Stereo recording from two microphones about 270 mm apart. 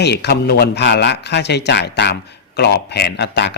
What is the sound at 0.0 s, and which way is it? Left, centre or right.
A man's voice, left.